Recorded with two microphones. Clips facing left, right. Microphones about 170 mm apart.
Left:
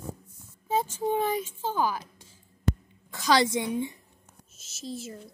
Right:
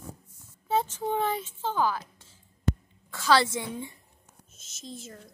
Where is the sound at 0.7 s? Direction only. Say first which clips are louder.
Left 1 dB; 10° left (ahead or behind).